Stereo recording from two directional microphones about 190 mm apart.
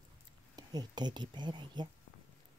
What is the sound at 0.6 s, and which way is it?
Speech, 20° right (ahead or behind).